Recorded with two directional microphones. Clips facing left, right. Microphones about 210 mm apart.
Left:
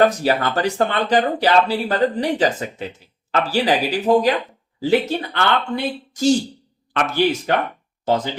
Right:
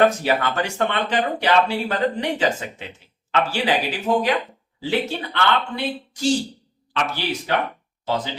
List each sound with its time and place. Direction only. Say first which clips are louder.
0.2 s speech: left 3 dB; 35° left (ahead or behind)
7.5 s speech: left 3 dB; 50° left (ahead or behind)